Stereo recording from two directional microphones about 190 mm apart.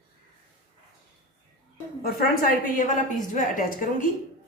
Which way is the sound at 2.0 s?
50° left (ahead or behind).